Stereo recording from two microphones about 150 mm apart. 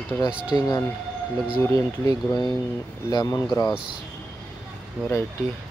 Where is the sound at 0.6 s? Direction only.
25° left (ahead or behind).